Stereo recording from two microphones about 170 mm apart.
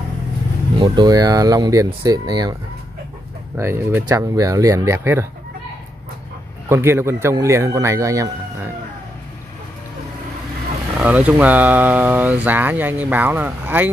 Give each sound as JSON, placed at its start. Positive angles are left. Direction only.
{"t": 0.7, "sound": "speech", "side_deg": -25}
{"t": 3.5, "sound": "speech", "side_deg": -15}
{"t": 6.7, "sound": "speech", "side_deg": -15}
{"t": 11.0, "sound": "speech", "side_deg": -10}